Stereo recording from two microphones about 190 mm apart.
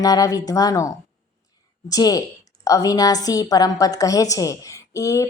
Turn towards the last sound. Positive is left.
turn(degrees=15)  # may be behind; listen again after turning